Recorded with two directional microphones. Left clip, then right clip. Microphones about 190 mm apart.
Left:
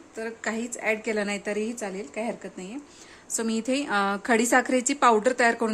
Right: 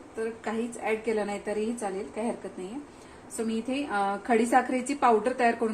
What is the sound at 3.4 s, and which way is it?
A woman's voice, 60° left (ahead or behind).